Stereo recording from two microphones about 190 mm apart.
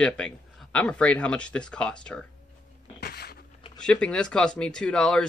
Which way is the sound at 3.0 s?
55° left (ahead or behind).